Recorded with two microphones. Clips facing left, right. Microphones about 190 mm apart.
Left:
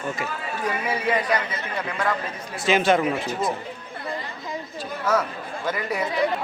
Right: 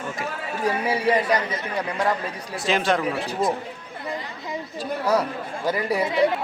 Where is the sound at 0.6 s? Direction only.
35° right (ahead or behind).